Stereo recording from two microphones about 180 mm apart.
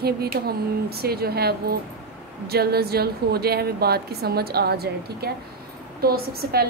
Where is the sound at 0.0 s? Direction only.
60° right (ahead or behind).